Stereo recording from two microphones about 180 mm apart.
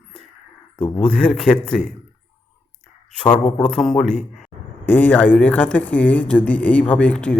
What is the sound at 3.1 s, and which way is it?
A woman's voice, 5° left (ahead or behind).